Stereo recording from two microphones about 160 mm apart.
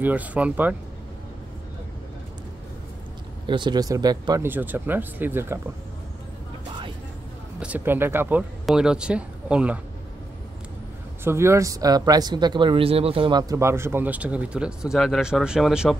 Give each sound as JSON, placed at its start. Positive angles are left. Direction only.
{"t": 0.0, "sound": "speech", "side_deg": -10}
{"t": 3.4, "sound": "speech", "side_deg": -30}
{"t": 4.5, "sound": "speech", "side_deg": -10}
{"t": 7.6, "sound": "speech", "side_deg": -10}
{"t": 11.2, "sound": "speech", "side_deg": -15}